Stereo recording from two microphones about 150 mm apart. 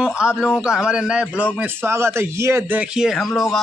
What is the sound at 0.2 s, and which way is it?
A man's voice, 5° right (ahead or behind).